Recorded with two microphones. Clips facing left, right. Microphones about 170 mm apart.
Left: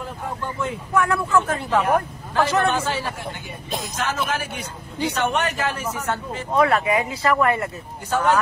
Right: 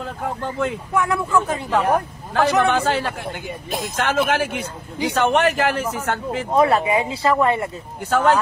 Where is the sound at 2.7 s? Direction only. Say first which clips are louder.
Right 4 dB; 65° right (ahead or behind).